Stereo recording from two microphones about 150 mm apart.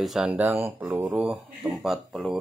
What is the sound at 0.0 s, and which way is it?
Speech, 5° right (ahead or behind).